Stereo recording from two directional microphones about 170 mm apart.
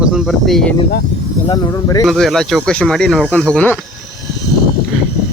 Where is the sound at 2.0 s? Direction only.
Centre (ahead or behind).